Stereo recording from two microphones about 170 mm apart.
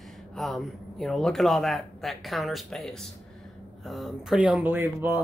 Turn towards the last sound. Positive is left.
turn(degrees=-10)  # may be behind; listen again after turning